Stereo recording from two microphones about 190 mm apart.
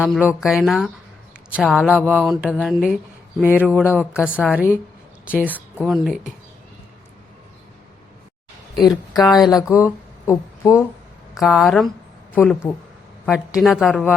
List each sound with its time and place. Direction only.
0.0 s a woman's voice: 5° right (ahead or behind)
8.7 s speech: 20° left (ahead or behind)
9.2 s a woman's voice: centre (ahead or behind)
9.6 s speech: 15° left (ahead or behind)
11.3 s a woman's voice: centre (ahead or behind)
13.2 s a woman's voice: centre (ahead or behind)